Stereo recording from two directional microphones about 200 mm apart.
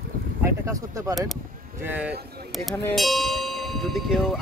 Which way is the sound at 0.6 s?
15° right (ahead or behind).